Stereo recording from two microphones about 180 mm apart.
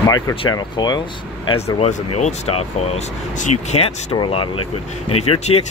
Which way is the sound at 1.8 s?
35° left (ahead or behind).